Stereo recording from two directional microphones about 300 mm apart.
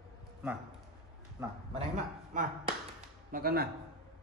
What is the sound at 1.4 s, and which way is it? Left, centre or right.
A man's voice, centre.